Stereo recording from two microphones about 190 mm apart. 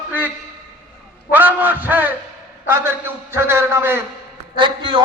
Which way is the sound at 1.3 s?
10° right (ahead or behind).